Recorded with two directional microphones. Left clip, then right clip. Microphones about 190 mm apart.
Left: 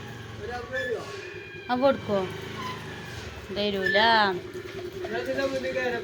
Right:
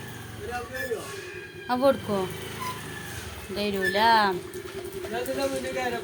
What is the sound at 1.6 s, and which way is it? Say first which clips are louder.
Speech: right 1 dB; 25° right (ahead or behind).